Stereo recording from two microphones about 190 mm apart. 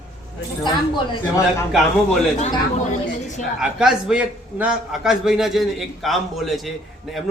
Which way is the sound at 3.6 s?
5° right (ahead or behind).